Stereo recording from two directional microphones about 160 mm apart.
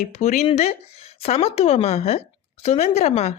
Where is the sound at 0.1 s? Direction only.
45° left (ahead or behind).